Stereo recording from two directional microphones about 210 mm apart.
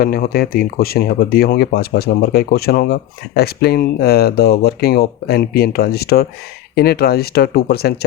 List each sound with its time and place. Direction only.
0.0 s speech: 45° left (ahead or behind)